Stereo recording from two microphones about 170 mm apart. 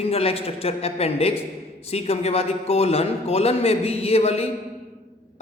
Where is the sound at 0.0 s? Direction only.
35° left (ahead or behind).